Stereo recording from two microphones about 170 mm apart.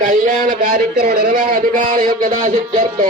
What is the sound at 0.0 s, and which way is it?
Speech, 50° right (ahead or behind).